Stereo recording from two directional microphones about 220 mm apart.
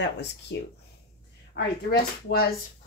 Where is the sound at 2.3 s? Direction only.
45° left (ahead or behind).